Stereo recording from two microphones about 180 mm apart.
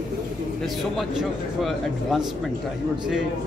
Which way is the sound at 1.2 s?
Centre (ahead or behind).